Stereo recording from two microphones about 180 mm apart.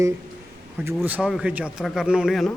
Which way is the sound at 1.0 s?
5° right (ahead or behind).